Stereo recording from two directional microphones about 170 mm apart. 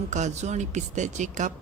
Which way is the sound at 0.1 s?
45° right (ahead or behind).